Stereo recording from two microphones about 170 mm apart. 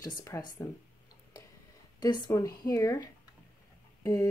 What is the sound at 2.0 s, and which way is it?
Speech, 20° left (ahead or behind).